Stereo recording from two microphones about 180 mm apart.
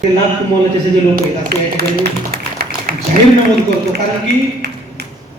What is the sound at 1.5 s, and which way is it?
Speech, 60° right (ahead or behind).